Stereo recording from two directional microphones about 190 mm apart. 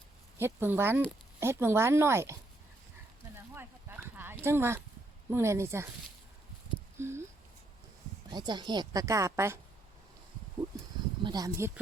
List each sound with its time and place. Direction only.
0.3 s speech: 10° right (ahead or behind)
3.3 s a sound: 10° right (ahead or behind)
5.3 s speech: 15° right (ahead or behind)
6.9 s speech: 15° right (ahead or behind)
8.3 s a woman's voice: 20° right (ahead or behind)
10.7 s a sound: 20° right (ahead or behind)
11.2 s a woman's voice: 20° right (ahead or behind)